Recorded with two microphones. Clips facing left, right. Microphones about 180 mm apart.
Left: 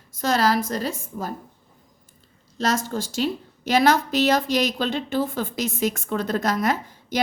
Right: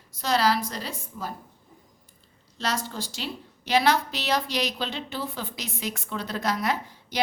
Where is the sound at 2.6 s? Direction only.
45° left (ahead or behind).